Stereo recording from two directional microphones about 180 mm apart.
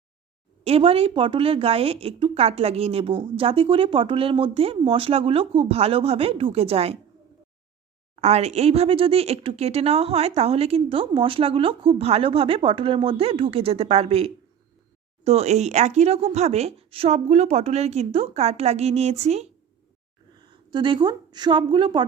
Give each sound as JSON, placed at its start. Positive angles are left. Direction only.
{"t": 0.6, "sound": "a woman's voice", "side_deg": -35}
{"t": 8.1, "sound": "a woman's voice", "side_deg": -35}
{"t": 20.4, "sound": "speech", "side_deg": -25}